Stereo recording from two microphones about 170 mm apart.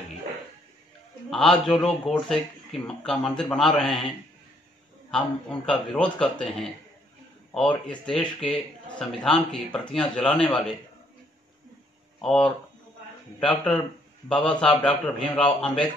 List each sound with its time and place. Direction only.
1.3 s a man's voice: centre (ahead or behind)
5.1 s a man's voice: 5° left (ahead or behind)
12.2 s a man's voice: centre (ahead or behind)